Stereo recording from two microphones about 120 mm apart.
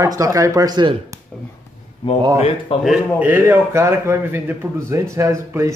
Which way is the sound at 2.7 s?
45° left (ahead or behind).